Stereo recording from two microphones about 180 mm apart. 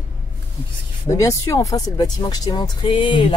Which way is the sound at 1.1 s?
15° left (ahead or behind).